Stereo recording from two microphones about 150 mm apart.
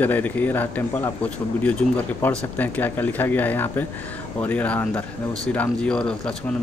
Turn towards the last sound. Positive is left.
turn(degrees=5)  # may be behind; listen again after turning